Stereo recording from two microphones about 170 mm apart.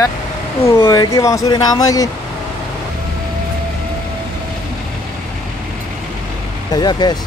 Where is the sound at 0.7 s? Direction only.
20° left (ahead or behind).